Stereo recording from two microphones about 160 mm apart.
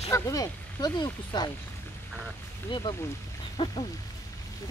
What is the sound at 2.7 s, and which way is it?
Speech, 30° left (ahead or behind).